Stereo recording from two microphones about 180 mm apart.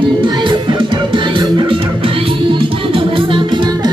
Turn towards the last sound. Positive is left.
turn(degrees=-25)  # may be behind; listen again after turning